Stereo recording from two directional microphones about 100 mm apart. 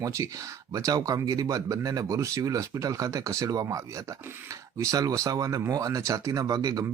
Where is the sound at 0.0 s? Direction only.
30° right (ahead or behind).